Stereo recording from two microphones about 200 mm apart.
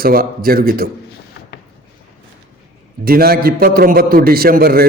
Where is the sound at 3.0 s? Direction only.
50° right (ahead or behind).